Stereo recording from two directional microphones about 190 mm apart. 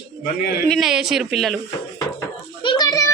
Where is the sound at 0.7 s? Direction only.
Centre (ahead or behind).